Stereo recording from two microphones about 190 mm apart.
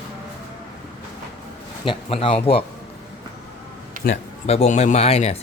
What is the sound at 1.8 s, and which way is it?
Speech, 30° left (ahead or behind).